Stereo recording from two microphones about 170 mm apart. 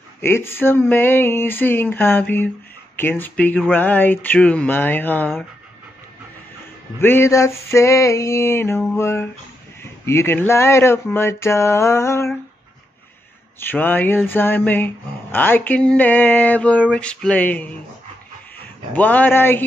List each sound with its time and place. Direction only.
0.2 s speech: 15° left (ahead or behind)
7.0 s speech: 15° left (ahead or behind)
13.6 s speech: 10° left (ahead or behind)
18.9 s speech: 10° left (ahead or behind)